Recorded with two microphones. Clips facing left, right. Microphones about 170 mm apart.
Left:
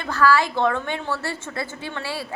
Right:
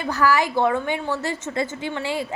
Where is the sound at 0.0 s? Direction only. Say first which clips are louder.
Left 1 dB; 15° right (ahead or behind).